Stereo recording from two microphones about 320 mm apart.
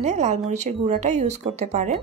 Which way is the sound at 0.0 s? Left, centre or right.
Right.